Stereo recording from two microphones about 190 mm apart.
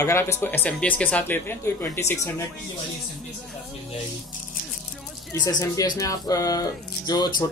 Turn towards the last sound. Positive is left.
turn(degrees=20)  # may be behind; listen again after turning